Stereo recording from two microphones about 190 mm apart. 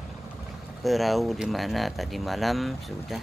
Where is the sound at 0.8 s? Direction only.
Centre (ahead or behind).